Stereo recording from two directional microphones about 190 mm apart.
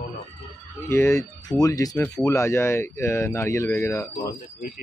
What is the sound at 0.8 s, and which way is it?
Speech, 15° left (ahead or behind).